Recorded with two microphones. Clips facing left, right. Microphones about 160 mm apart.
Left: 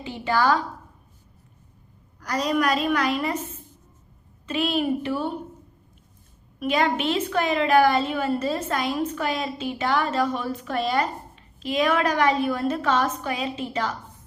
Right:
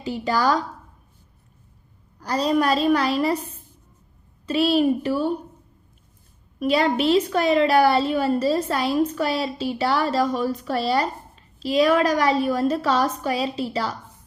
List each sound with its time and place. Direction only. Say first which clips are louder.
0.0 s a woman's voice: right 1 dB; 40° right (ahead or behind)
2.1 s a woman's voice: right 3 dB; 30° right (ahead or behind)
4.4 s a woman's voice: right 5 dB; 35° right (ahead or behind)
6.6 s a woman's voice: right 3 dB; 35° right (ahead or behind)